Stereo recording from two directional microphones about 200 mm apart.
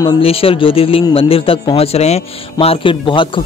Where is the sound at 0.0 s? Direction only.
30° left (ahead or behind).